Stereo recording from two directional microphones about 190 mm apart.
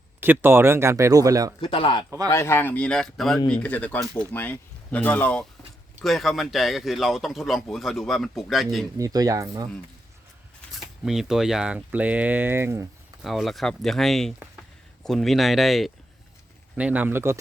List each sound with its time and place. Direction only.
0.2 s speech: 10° right (ahead or behind)
1.6 s speech: 25° left (ahead or behind)
2.0 s speech: 20° right (ahead or behind)
2.3 s speech: 15° left (ahead or behind)
9.0 s speech: 20° right (ahead or behind)
10.8 s speech: centre (ahead or behind)
13.2 s speech: centre (ahead or behind)